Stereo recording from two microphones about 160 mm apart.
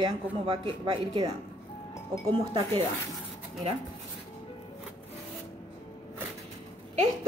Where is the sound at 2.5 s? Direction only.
35° right (ahead or behind).